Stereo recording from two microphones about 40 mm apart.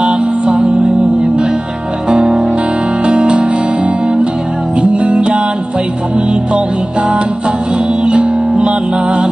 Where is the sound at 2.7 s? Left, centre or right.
Right.